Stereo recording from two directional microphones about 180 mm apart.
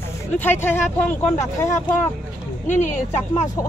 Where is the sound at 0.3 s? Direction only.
10° left (ahead or behind).